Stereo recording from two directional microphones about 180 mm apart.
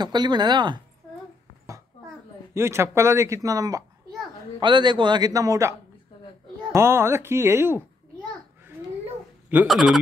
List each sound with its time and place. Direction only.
0.0 s a man's voice: 25° right (ahead or behind)
2.5 s a man's voice: 15° right (ahead or behind)
9.5 s speech: 5° right (ahead or behind)